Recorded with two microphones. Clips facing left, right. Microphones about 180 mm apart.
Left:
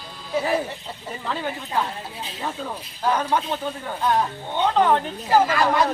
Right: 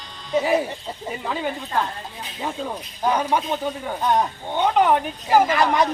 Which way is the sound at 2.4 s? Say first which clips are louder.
Right 3 dB; 15° right (ahead or behind).